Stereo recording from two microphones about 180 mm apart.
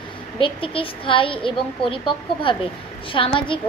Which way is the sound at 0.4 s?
30° left (ahead or behind).